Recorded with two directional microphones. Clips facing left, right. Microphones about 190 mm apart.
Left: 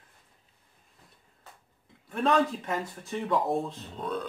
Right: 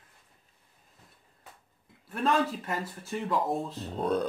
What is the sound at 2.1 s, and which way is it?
Speech, 5° right (ahead or behind).